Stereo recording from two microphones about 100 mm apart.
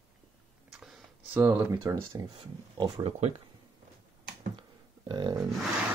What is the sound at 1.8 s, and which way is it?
Speech, 35° right (ahead or behind).